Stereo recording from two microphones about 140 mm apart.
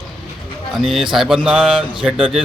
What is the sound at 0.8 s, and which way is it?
A man's voice, centre (ahead or behind).